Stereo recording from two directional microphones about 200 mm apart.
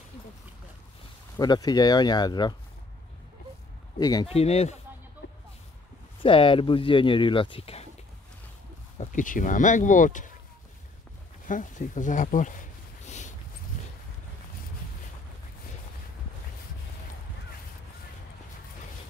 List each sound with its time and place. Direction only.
1.4 s speech: 20° left (ahead or behind)
4.0 s speech: 20° left (ahead or behind)
6.2 s speech: 25° left (ahead or behind)
8.9 s speech: 40° left (ahead or behind)
11.4 s a sound: 40° left (ahead or behind)